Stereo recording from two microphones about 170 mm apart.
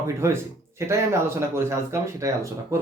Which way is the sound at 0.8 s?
15° right (ahead or behind).